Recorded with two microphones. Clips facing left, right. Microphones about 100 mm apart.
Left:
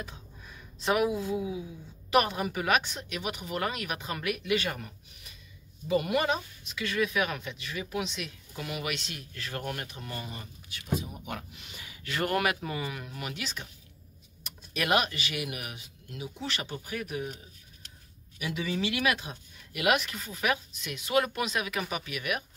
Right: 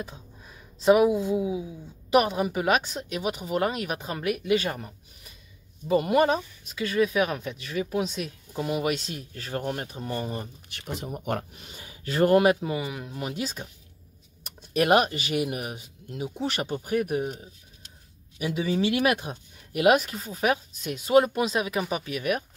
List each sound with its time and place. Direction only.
0.5 s speech: 30° right (ahead or behind)
10.7 s speech: 70° right (ahead or behind)
11.1 s speech: 55° right (ahead or behind)
11.5 s speech: 35° right (ahead or behind)
12.5 s speech: 20° right (ahead or behind)
13.3 s speech: 40° right (ahead or behind)
14.4 s typing: 45° right (ahead or behind)
15.1 s speech: 45° right (ahead or behind)
16.2 s speech: 50° right (ahead or behind)
18.4 s speech: 35° right (ahead or behind)